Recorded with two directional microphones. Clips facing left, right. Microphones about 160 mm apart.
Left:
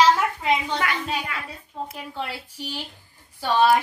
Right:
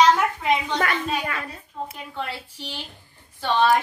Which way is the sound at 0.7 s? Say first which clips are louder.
Right 2 dB; 45° right (ahead or behind).